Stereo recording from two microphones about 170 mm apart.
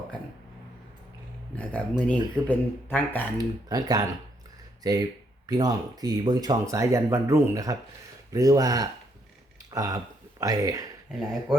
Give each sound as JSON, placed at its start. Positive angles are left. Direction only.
{"t": 1.5, "sound": "speech", "side_deg": 5}
{"t": 3.3, "sound": "speech", "side_deg": -20}